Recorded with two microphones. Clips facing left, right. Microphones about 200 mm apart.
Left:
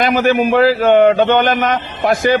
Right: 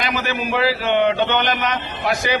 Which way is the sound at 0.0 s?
50° left (ahead or behind).